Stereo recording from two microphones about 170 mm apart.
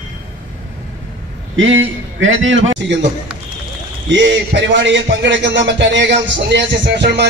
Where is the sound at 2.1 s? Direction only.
90° right.